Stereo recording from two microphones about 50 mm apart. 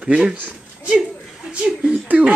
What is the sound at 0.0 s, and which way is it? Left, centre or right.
Speech, centre.